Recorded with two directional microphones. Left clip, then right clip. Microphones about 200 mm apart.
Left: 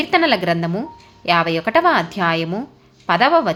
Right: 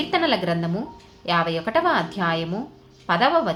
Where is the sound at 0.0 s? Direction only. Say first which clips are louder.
Left 5 dB; 30° left (ahead or behind).